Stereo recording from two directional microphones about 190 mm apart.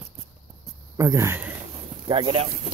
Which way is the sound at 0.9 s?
15° right (ahead or behind).